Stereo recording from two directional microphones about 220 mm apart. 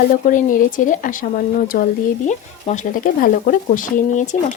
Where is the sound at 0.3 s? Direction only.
35° left (ahead or behind).